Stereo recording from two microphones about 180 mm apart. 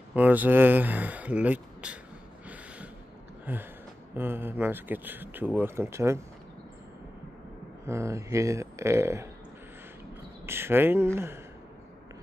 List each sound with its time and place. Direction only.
0.1 s speech: 10° right (ahead or behind)
2.4 s gasp: 10° right (ahead or behind)
3.5 s speech: 10° right (ahead or behind)
7.8 s speech: 15° right (ahead or behind)
10.4 s speech: 15° right (ahead or behind)